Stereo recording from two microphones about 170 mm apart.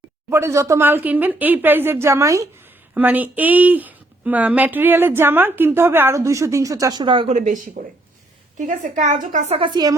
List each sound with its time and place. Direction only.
0.3 s speech: 15° right (ahead or behind)
7.3 s a woman's voice: 50° right (ahead or behind)
9.6 s speech: 25° right (ahead or behind)